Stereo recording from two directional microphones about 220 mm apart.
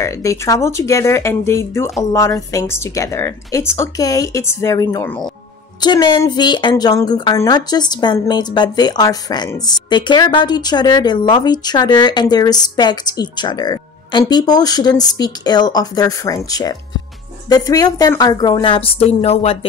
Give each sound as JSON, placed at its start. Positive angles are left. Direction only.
{"t": 0.0, "sound": "speech", "side_deg": 15}
{"t": 5.8, "sound": "a woman's voice", "side_deg": 20}